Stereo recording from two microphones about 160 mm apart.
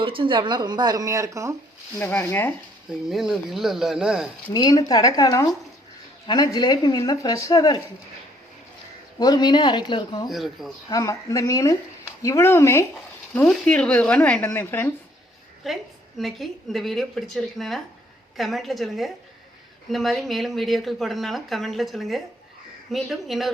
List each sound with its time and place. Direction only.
0.0 s speech: 35° right (ahead or behind)
2.0 s speech: 10° left (ahead or behind)
3.1 s speech: centre (ahead or behind)
4.5 s speech: 25° left (ahead or behind)
9.1 s speech: 25° left (ahead or behind)
10.2 s speech: centre (ahead or behind)
10.8 s speech: 20° left (ahead or behind)
15.6 s speech: centre (ahead or behind)